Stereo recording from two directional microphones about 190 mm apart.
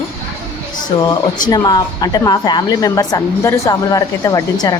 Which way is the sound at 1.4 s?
20° left (ahead or behind).